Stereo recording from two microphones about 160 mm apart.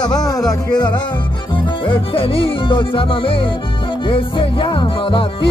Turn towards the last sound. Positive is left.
turn(degrees=30)  # may be behind; listen again after turning